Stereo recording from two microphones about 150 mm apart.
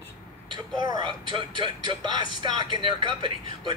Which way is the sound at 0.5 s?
30° right (ahead or behind).